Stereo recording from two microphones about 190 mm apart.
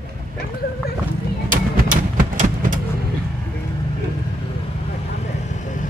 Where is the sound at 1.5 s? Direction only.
45° right (ahead or behind).